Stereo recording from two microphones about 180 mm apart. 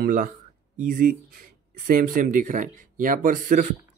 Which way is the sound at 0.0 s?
50° right (ahead or behind).